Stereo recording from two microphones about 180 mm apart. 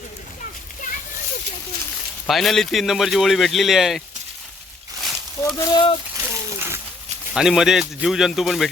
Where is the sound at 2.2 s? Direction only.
Centre (ahead or behind).